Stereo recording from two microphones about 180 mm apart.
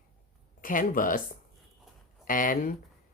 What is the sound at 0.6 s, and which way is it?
Speech, 50° left (ahead or behind).